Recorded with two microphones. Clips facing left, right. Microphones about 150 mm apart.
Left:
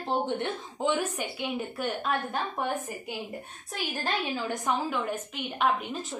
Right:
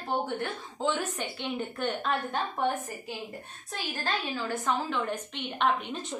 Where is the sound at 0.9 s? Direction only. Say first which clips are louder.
Left 3 dB; 10° left (ahead or behind).